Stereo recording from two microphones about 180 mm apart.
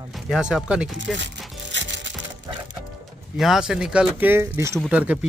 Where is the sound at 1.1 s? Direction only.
90° right.